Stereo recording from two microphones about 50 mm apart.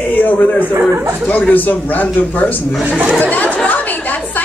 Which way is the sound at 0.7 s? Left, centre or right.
Right.